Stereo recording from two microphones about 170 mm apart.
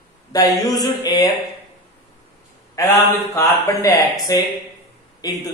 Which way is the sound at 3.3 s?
20° left (ahead or behind).